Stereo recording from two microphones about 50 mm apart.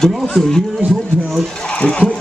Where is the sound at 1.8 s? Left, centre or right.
Left.